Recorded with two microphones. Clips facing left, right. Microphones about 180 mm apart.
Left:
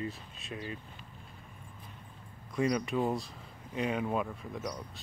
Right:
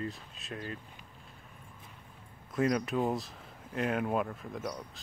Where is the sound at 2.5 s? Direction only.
Centre (ahead or behind).